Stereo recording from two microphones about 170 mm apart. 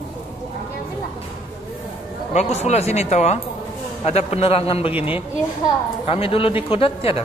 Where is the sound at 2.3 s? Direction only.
40° left (ahead or behind).